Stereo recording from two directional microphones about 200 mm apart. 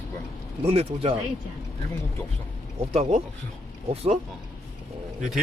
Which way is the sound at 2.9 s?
35° right (ahead or behind).